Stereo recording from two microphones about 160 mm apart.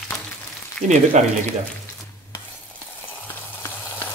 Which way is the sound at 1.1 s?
45° right (ahead or behind).